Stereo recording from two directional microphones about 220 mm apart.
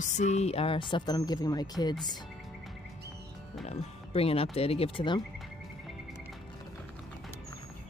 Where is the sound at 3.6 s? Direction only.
25° left (ahead or behind).